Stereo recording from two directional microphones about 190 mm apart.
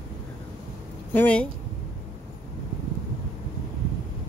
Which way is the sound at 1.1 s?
5° left (ahead or behind).